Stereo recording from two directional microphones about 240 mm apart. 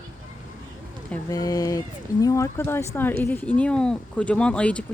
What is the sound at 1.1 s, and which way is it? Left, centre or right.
Speech, centre.